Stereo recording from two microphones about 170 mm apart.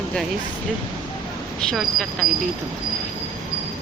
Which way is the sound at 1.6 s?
5° left (ahead or behind).